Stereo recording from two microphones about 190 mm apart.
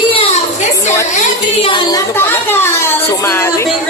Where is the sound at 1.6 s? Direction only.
25° left (ahead or behind).